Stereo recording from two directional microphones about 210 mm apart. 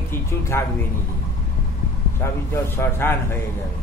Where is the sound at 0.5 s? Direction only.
10° left (ahead or behind).